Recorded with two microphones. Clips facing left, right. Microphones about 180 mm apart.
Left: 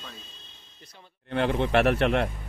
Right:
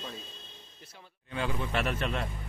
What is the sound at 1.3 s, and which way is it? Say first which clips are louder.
Speech: left 9 dB; 65° left (ahead or behind).